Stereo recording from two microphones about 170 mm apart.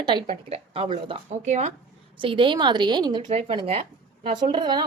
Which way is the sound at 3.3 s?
35° right (ahead or behind).